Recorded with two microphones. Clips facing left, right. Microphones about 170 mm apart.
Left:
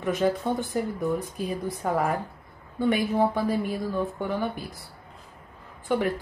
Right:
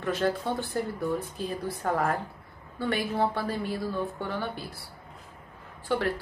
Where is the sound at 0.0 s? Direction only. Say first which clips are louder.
Left 3 dB; 15° left (ahead or behind).